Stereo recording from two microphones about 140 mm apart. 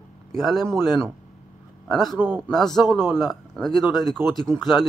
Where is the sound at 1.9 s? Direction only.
Centre (ahead or behind).